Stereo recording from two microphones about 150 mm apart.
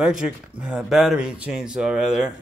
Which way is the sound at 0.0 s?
5° right (ahead or behind).